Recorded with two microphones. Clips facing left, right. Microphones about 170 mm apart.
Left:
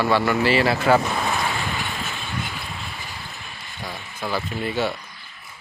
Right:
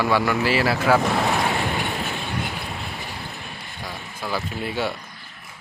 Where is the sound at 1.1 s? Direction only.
70° right (ahead or behind); by 3.7 s 55° right (ahead or behind).